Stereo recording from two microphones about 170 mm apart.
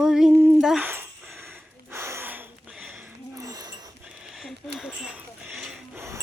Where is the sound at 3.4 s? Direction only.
20° right (ahead or behind).